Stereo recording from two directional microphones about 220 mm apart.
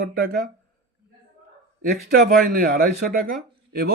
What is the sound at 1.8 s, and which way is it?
Speech, 45° right (ahead or behind).